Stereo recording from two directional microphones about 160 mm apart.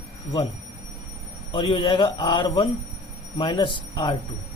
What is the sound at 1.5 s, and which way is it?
Speech, 30° left (ahead or behind).